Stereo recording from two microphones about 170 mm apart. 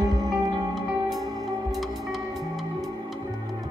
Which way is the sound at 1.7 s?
Centre (ahead or behind).